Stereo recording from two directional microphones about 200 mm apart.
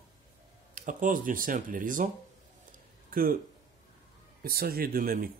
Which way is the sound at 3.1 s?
45° right (ahead or behind).